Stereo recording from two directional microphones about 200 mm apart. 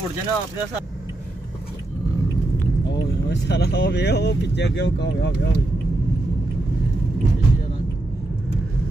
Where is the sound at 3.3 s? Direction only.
60° left (ahead or behind).